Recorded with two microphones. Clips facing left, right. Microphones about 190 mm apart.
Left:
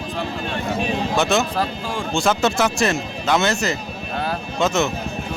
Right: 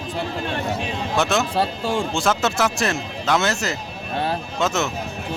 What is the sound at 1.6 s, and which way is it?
Speech, 30° right (ahead or behind).